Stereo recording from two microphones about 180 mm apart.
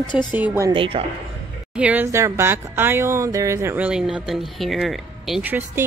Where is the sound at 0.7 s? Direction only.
30° right (ahead or behind).